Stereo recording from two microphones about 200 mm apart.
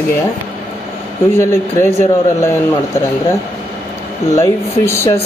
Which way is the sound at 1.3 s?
10° left (ahead or behind).